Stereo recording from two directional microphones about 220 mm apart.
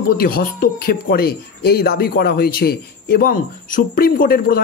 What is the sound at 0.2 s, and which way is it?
Speech, 40° left (ahead or behind).